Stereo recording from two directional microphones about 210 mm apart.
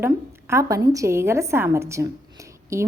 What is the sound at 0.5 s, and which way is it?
A woman's voice, 15° right (ahead or behind).